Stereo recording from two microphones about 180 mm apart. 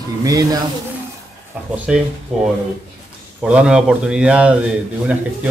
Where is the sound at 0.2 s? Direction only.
20° right (ahead or behind).